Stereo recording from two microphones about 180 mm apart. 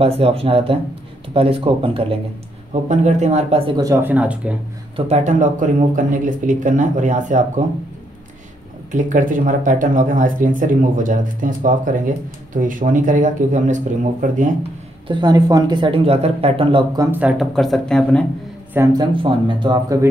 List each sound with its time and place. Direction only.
0.0 s speech: 35° right (ahead or behind); by 4.6 s 5° right (ahead or behind)
4.9 s speech: 40° right (ahead or behind)
8.9 s speech: 45° right (ahead or behind)
15.0 s speech: 25° right (ahead or behind)
17.1 s speech: 5° right (ahead or behind)
18.7 s speech: 15° right (ahead or behind)
19.2 s speech: 25° right (ahead or behind)